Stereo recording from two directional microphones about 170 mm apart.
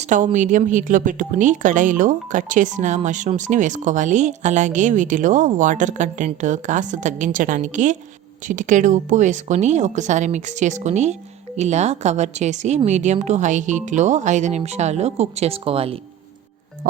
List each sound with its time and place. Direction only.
0.0 s speech: 45° right (ahead or behind)